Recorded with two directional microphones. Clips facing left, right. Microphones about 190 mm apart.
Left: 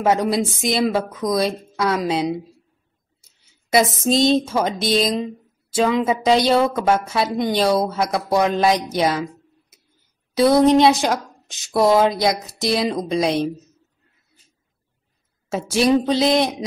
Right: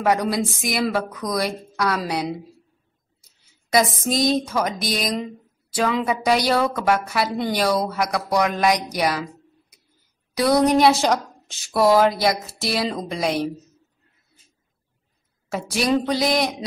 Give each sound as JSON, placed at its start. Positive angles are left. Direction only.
{"t": 0.0, "sound": "a woman's voice", "side_deg": 25}
{"t": 3.7, "sound": "a woman's voice", "side_deg": 25}
{"t": 15.5, "sound": "a woman's voice", "side_deg": 25}